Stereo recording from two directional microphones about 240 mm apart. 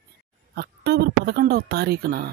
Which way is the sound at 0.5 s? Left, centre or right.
Right.